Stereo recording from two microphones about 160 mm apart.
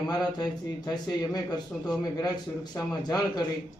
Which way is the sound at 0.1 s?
25° left (ahead or behind).